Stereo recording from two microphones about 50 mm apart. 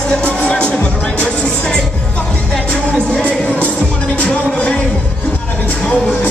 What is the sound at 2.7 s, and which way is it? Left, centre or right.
Music, left.